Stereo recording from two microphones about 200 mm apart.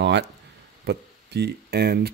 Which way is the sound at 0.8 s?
55° right (ahead or behind).